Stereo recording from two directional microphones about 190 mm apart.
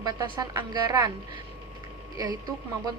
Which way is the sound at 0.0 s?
20° right (ahead or behind).